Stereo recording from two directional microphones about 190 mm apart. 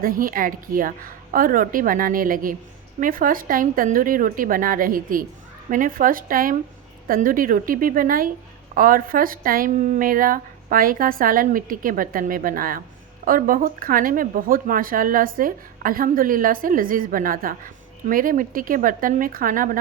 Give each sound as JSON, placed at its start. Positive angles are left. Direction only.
{"t": 0.0, "sound": "speech", "side_deg": -50}